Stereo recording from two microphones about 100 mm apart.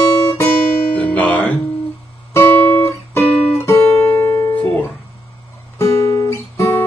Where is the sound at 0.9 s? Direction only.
10° left (ahead or behind).